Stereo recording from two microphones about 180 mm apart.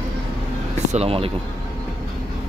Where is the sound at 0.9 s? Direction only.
35° right (ahead or behind).